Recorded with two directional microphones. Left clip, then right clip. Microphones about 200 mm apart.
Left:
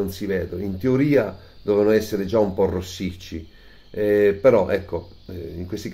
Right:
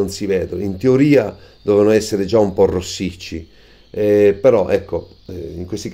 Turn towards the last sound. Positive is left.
turn(degrees=-25)  # may be behind; listen again after turning